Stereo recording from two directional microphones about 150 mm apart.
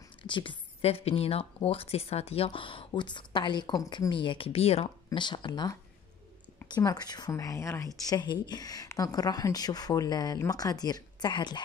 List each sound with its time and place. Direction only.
0.2 s a woman's voice: 35° left (ahead or behind)